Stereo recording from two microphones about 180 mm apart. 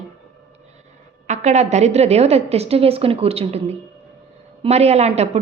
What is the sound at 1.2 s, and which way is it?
A woman's voice, 40° right (ahead or behind).